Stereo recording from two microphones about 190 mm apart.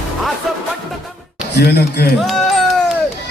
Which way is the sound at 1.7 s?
60° left (ahead or behind).